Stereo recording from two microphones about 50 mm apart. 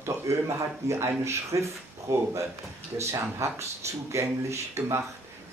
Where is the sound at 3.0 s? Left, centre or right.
Right.